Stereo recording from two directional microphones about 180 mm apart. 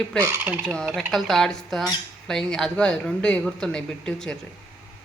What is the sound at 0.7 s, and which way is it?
Speech, centre (ahead or behind).